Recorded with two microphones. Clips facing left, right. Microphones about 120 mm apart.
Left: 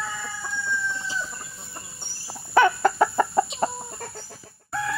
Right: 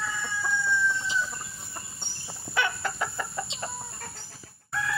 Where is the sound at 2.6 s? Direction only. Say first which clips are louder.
Left 11 dB; 45° left (ahead or behind).